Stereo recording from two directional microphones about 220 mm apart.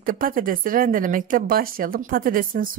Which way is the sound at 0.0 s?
40° right (ahead or behind).